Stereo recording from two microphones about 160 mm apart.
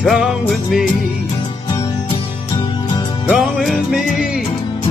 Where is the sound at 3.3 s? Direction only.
Centre (ahead or behind).